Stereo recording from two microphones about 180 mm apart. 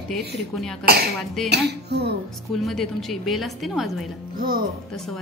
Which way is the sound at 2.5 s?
Centre (ahead or behind).